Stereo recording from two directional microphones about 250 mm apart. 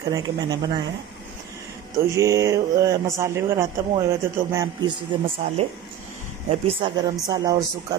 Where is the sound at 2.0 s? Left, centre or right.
Centre.